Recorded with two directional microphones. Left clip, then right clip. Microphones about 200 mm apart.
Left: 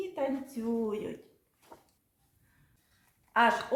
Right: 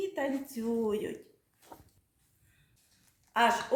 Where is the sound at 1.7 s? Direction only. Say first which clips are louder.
Right 2 dB; 55° right (ahead or behind).